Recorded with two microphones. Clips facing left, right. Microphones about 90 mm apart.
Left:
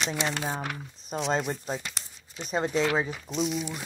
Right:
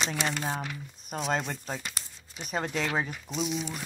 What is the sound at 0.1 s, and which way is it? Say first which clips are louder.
Speech: left 1 dB; 15° left (ahead or behind).